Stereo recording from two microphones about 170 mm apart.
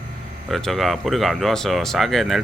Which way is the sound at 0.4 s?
Centre (ahead or behind).